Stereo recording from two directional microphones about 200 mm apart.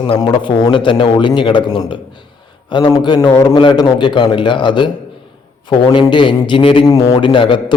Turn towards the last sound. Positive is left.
turn(degrees=25)  # may be behind; listen again after turning